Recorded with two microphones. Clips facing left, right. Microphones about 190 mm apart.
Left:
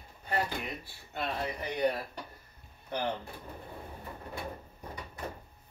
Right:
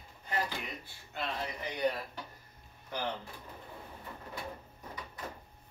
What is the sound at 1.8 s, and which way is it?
Speech, 60° left (ahead or behind).